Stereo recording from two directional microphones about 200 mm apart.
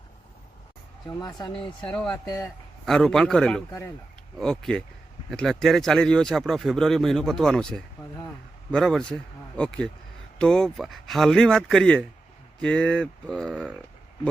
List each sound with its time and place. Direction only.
1.0 s speech: 20° left (ahead or behind)
1.9 s speech: 5° left (ahead or behind)
2.1 s speech: 20° left (ahead or behind)
2.8 s speech: 5° left (ahead or behind)